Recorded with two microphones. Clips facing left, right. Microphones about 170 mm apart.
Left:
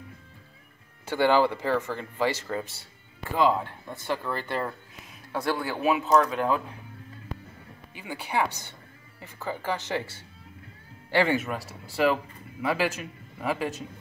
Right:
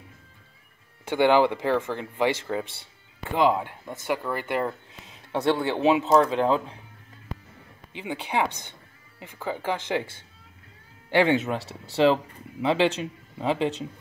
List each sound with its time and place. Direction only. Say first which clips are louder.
1.1 s speech: right 2 dB; 20° right (ahead or behind)
7.9 s speech: right 2 dB; 20° right (ahead or behind)
11.1 s speech: right 3 dB; 20° right (ahead or behind)